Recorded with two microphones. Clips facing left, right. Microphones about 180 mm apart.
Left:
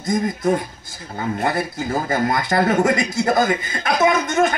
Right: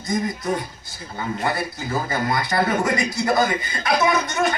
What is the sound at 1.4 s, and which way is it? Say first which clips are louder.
A man's voice: left 3 dB; 50° left (ahead or behind).